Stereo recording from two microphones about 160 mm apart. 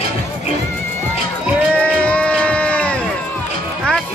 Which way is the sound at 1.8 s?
5° left (ahead or behind).